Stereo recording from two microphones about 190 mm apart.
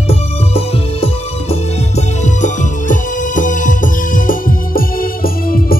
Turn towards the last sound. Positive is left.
turn(degrees=50)  # may be behind; listen again after turning